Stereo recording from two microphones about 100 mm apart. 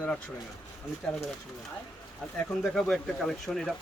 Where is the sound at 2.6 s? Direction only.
Centre (ahead or behind).